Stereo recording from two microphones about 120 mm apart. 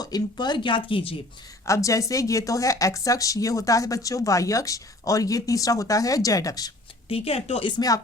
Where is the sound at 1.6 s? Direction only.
25° left (ahead or behind).